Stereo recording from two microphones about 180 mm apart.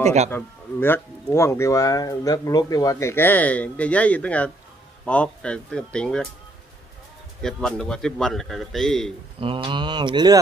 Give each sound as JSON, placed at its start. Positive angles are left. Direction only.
{"t": 0.0, "sound": "a man's voice", "side_deg": -40}
{"t": 0.3, "sound": "a man's voice", "side_deg": 10}
{"t": 7.4, "sound": "a man's voice", "side_deg": 0}
{"t": 9.4, "sound": "mantra", "side_deg": -30}